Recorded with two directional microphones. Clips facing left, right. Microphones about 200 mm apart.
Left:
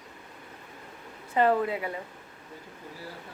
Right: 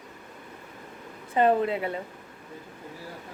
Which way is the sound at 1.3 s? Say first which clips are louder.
Right 2 dB; 20° right (ahead or behind).